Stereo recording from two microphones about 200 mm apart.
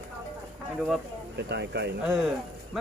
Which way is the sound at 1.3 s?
55° right (ahead or behind).